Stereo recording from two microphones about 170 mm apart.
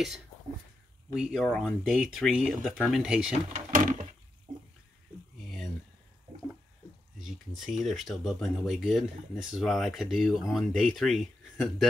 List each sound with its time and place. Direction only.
1.1 s speech: 5° right (ahead or behind)
3.5 s drawer open or close: 50° right (ahead or behind)
7.2 s speech: centre (ahead or behind)